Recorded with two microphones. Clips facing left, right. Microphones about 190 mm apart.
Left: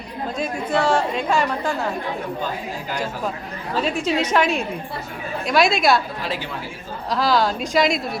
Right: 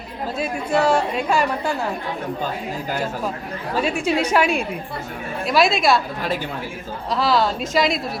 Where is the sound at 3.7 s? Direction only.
10° right (ahead or behind).